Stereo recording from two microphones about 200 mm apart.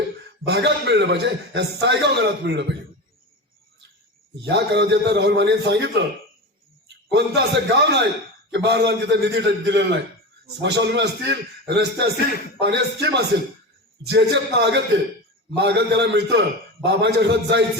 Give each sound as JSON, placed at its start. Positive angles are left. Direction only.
{"t": 0.4, "sound": "a man's voice", "side_deg": -60}
{"t": 4.4, "sound": "a man's voice", "side_deg": -60}
{"t": 7.1, "sound": "a man's voice", "side_deg": -60}
{"t": 12.1, "sound": "a man's voice", "side_deg": 50}
{"t": 12.5, "sound": "a man's voice", "side_deg": -60}